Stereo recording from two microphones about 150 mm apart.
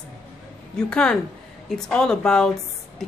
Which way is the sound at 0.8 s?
5° left (ahead or behind).